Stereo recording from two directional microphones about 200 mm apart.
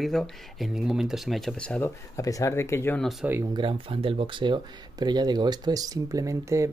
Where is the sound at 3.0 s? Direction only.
10° right (ahead or behind).